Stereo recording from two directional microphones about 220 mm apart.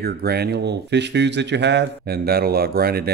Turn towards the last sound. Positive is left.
turn(degrees=-45)  # may be behind; listen again after turning